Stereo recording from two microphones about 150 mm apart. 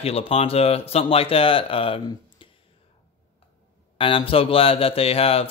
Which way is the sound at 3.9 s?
35° left (ahead or behind).